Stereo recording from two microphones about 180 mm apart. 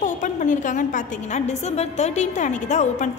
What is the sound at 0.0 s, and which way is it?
A woman's voice, 45° left (ahead or behind).